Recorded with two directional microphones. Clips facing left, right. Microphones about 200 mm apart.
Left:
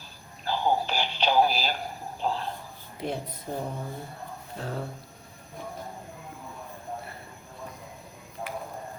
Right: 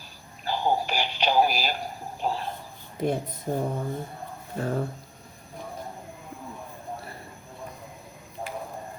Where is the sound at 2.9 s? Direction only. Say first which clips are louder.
Right 6 dB; 50° right (ahead or behind).